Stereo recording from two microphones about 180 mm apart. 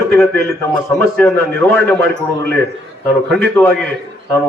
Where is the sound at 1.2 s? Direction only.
10° left (ahead or behind).